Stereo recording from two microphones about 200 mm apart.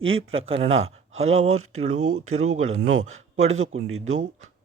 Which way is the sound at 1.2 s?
90° right.